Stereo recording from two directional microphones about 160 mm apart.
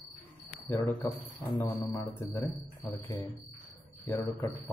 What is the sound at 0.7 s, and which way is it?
Speech, 15° left (ahead or behind).